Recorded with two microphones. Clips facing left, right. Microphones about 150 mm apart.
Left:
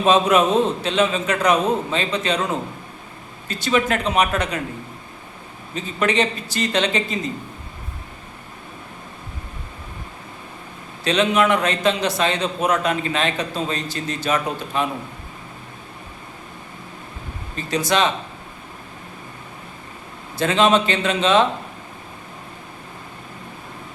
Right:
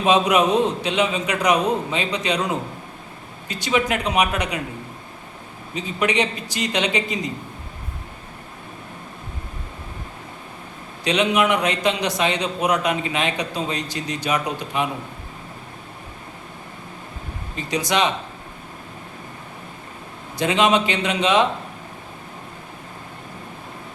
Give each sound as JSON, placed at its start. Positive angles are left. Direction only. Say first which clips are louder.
{"t": 0.0, "sound": "a man's voice", "louder": "left 1 dB", "side_deg": -15}
{"t": 5.7, "sound": "a man's voice", "louder": "left 1 dB", "side_deg": -15}
{"t": 11.0, "sound": "a man's voice", "louder": "left 1 dB", "side_deg": -15}
{"t": 17.7, "sound": "a man's voice", "louder": "left 1 dB", "side_deg": -15}
{"t": 20.4, "sound": "a man's voice", "louder": "left 1 dB", "side_deg": -15}